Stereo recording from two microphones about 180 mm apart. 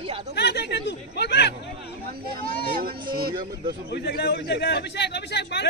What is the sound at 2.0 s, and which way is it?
Speech, 55° right (ahead or behind).